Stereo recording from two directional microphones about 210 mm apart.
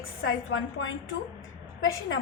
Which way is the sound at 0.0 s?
70° left (ahead or behind).